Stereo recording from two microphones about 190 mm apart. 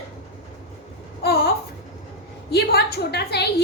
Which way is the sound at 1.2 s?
55° left (ahead or behind).